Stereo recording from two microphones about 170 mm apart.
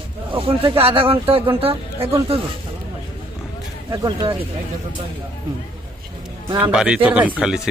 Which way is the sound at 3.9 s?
25° right (ahead or behind).